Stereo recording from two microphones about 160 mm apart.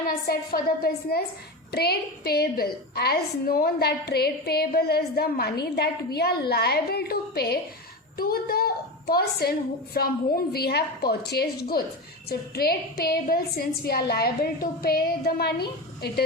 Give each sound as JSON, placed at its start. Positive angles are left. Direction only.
{"t": 0.3, "sound": "a woman's voice", "side_deg": 70}
{"t": 8.1, "sound": "a woman's voice", "side_deg": 70}
{"t": 12.3, "sound": "a woman's voice", "side_deg": 70}